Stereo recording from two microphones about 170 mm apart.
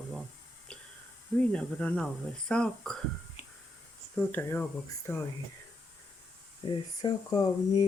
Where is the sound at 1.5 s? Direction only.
5° left (ahead or behind).